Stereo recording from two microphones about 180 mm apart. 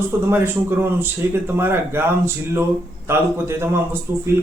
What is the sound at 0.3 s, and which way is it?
Speech, 10° right (ahead or behind).